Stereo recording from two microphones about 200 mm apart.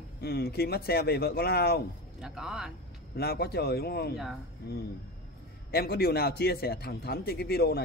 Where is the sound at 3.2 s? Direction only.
50° left (ahead or behind).